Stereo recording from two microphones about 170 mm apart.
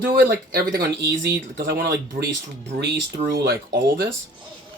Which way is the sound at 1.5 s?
60° right (ahead or behind).